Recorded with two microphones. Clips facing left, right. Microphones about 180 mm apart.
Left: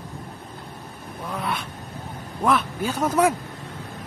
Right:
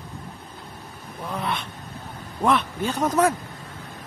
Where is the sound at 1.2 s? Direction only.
Centre (ahead or behind).